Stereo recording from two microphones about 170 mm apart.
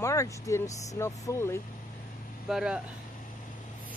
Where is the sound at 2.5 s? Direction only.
5° right (ahead or behind).